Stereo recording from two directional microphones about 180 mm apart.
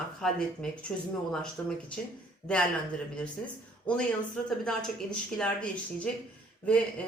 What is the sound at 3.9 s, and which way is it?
Speech, 5° left (ahead or behind).